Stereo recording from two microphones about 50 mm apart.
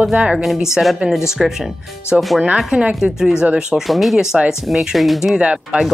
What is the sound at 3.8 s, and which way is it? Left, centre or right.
Speech, centre.